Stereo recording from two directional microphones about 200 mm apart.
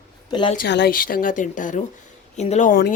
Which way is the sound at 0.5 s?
55° left (ahead or behind).